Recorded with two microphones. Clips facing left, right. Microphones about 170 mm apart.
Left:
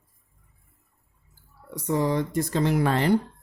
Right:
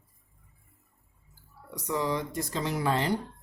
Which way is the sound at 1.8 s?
50° left (ahead or behind).